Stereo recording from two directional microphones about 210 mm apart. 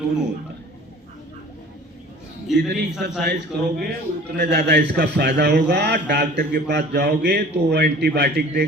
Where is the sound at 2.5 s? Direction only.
55° right (ahead or behind).